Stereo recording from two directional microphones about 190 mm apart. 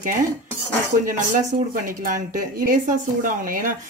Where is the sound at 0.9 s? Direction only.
45° right (ahead or behind).